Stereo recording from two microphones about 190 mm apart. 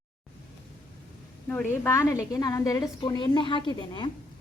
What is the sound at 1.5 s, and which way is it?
A woman's voice, 10° left (ahead or behind).